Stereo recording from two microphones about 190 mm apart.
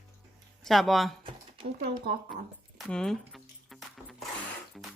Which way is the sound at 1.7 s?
55° right (ahead or behind).